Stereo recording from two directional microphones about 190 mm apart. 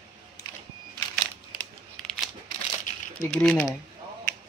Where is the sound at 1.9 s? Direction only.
Centre (ahead or behind).